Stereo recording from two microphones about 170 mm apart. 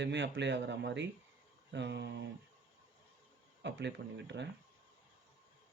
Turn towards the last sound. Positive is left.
turn(degrees=-90)